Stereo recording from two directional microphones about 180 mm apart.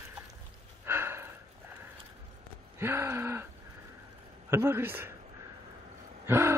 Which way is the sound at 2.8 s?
15° right (ahead or behind).